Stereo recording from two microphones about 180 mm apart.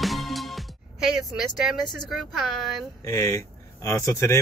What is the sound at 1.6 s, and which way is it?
Speech, centre (ahead or behind).